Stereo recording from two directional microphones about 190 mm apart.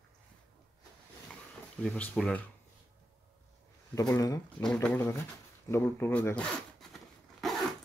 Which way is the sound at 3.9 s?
20° left (ahead or behind).